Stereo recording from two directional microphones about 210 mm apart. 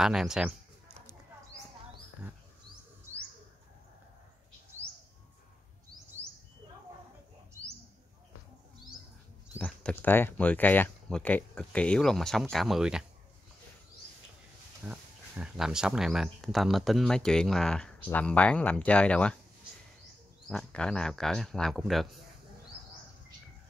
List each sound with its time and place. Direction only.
0.0 s a man's voice: centre (ahead or behind)
9.6 s speech: 10° left (ahead or behind)
14.9 s speech: 5° right (ahead or behind)
20.4 s speech: 5° left (ahead or behind)